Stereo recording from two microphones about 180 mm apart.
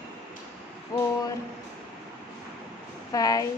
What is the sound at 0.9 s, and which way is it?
Music, 20° left (ahead or behind).